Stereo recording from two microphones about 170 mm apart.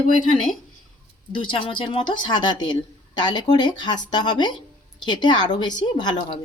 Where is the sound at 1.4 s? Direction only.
30° left (ahead or behind).